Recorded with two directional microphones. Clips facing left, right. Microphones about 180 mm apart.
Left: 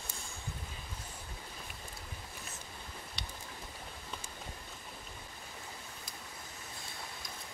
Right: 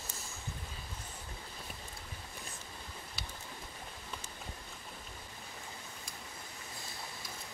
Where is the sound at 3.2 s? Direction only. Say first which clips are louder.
Even; 5° right (ahead or behind).